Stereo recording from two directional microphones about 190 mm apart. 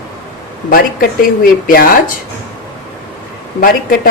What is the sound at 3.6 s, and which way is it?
Speech, 50° left (ahead or behind).